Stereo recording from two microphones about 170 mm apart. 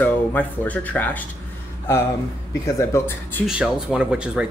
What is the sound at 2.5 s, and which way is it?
Speech, 15° left (ahead or behind).